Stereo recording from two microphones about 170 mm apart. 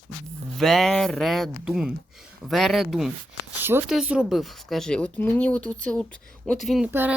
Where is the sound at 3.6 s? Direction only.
15° right (ahead or behind).